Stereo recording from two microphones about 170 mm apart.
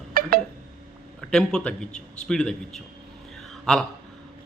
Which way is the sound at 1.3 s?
5° left (ahead or behind).